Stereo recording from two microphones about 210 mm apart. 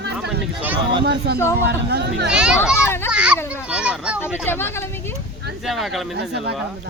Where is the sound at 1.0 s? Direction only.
50° right (ahead or behind).